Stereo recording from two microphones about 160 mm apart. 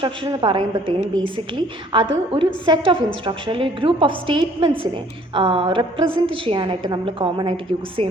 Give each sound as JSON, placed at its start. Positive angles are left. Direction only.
{"t": 0.0, "sound": "a woman's voice", "side_deg": -30}